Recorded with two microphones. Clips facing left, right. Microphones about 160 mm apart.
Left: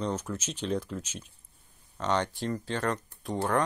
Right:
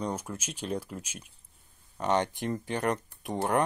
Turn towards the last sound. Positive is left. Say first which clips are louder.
# even
turn(degrees=-20)  # may be behind; listen again after turning